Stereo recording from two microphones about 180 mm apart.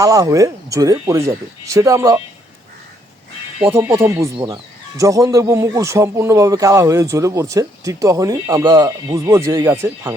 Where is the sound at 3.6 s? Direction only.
10° right (ahead or behind).